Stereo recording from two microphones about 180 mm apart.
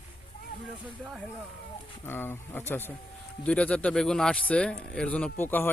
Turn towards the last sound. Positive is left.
turn(degrees=10)  # may be behind; listen again after turning